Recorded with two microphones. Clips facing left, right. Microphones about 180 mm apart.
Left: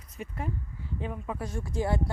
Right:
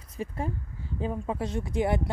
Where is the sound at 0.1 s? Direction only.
30° right (ahead or behind).